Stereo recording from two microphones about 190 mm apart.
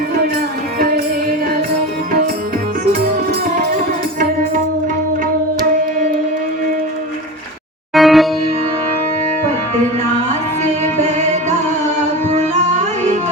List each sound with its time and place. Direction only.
7.9 s music: centre (ahead or behind)
11.0 s music: 35° right (ahead or behind)